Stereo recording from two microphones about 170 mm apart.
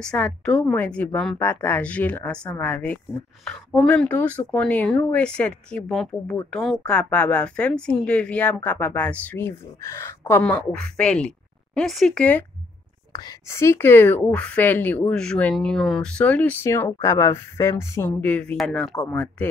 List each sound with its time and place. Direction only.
0.0 s a woman's voice: 5° left (ahead or behind)
13.1 s a woman's voice: 20° left (ahead or behind)